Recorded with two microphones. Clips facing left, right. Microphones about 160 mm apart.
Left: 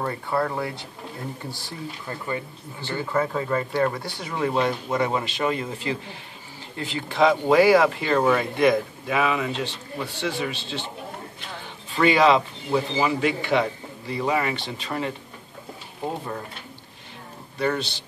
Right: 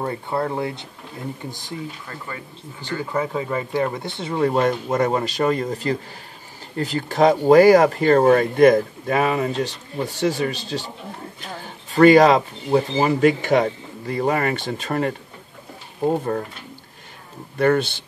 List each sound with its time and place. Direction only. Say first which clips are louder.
0.0 s speech: right 1 dB; 20° right (ahead or behind)
2.0 s speech: left 4 dB; 20° left (ahead or behind)
2.8 s speech: even; 15° right (ahead or behind)
4.5 s speech: right 3 dB; 45° right (ahead or behind)
17.6 s speech: right 7 dB; 55° right (ahead or behind)